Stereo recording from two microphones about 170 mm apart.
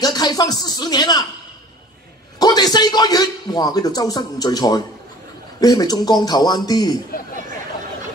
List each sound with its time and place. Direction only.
0.0 s speech: 25° left (ahead or behind)
2.3 s a man's voice: 25° left (ahead or behind)